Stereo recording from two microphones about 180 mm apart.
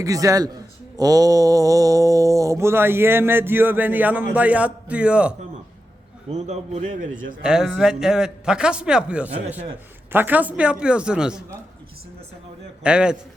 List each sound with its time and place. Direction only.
0.0 s a man's voice: 20° right (ahead or behind)
0.9 s mantra: 20° right (ahead or behind)
6.3 s a man's voice: 40° right (ahead or behind)
7.4 s a man's voice: 5° right (ahead or behind)
10.1 s mantra: 10° right (ahead or behind)
12.8 s a man's voice: 5° right (ahead or behind)